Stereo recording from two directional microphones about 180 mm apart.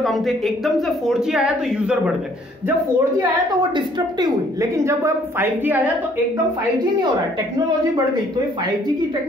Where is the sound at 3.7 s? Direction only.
25° right (ahead or behind).